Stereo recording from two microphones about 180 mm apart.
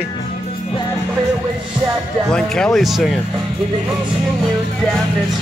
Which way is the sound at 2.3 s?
5° left (ahead or behind).